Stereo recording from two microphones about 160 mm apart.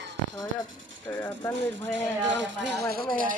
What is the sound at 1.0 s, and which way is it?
Speech, 15° left (ahead or behind).